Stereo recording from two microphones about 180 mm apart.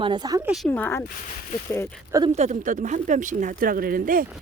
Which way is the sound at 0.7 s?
10° left (ahead or behind).